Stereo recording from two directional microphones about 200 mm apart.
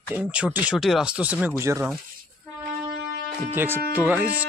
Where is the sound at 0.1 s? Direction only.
5° right (ahead or behind).